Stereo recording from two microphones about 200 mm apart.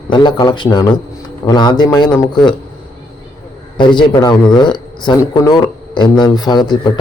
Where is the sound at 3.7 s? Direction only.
25° left (ahead or behind).